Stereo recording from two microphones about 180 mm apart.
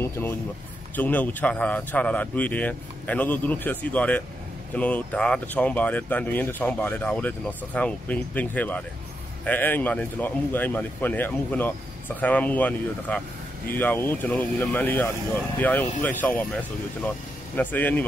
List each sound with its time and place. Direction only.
0.0 s a man's voice: 15° left (ahead or behind)
17.6 s speech: 10° left (ahead or behind)